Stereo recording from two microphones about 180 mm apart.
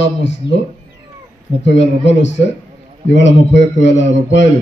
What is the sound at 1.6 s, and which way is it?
A man's voice, 90° left.